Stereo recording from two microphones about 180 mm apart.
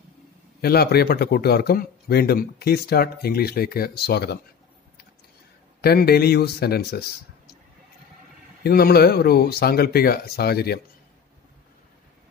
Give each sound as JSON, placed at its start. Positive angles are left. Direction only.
{"t": 0.6, "sound": "speech", "side_deg": 60}
{"t": 5.8, "sound": "speech", "side_deg": 60}
{"t": 8.6, "sound": "speech", "side_deg": 60}